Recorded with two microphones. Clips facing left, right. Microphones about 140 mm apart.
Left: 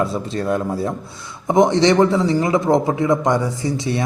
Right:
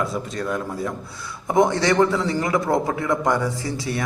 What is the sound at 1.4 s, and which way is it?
A man's voice, 20° left (ahead or behind).